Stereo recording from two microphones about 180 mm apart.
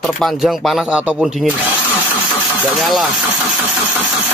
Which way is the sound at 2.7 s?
Centre (ahead or behind).